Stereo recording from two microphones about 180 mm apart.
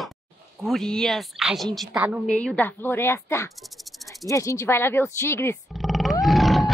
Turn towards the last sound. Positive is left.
turn(degrees=0)  # may be behind; listen again after turning